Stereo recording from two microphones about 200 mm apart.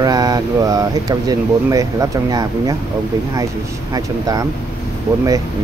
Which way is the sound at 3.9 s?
20° right (ahead or behind).